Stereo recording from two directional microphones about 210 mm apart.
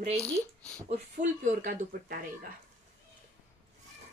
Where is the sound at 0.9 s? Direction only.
40° right (ahead or behind).